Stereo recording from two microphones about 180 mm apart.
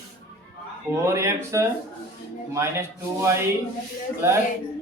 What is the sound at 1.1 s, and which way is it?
Speech, 15° right (ahead or behind).